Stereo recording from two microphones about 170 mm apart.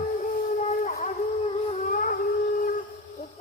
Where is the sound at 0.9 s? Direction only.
40° left (ahead or behind).